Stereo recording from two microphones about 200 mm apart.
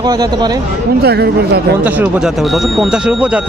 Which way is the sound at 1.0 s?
55° right (ahead or behind).